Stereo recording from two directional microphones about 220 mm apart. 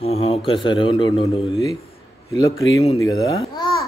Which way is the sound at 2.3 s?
15° left (ahead or behind).